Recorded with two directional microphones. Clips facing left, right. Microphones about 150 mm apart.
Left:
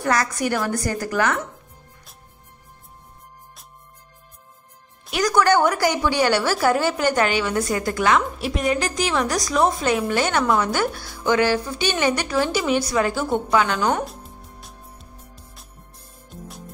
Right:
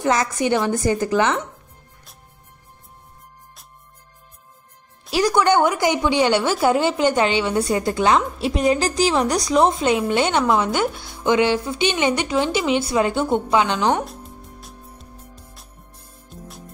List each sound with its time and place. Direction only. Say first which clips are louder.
0.0 s a woman's voice: right 2 dB; 20° right (ahead or behind)
5.1 s a woman's voice: right 1 dB; 25° right (ahead or behind)
13.8 s speech: right 2 dB; centre (ahead or behind)
14.6 s music: right 2 dB; centre (ahead or behind)
16.3 s music: left 1 dB; centre (ahead or behind)